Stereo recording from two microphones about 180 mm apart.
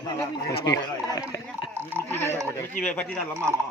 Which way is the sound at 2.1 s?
15° left (ahead or behind).